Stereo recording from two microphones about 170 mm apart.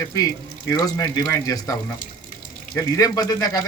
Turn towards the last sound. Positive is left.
turn(degrees=20)  # may be behind; listen again after turning